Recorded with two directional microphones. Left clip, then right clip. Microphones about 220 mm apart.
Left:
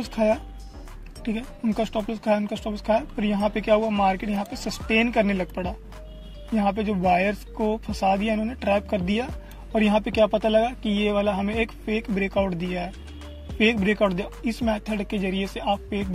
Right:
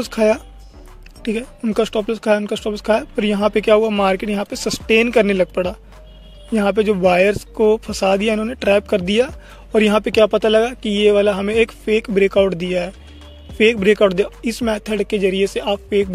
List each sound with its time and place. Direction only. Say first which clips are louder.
0.0 s speech: right 7 dB; 50° right (ahead or behind)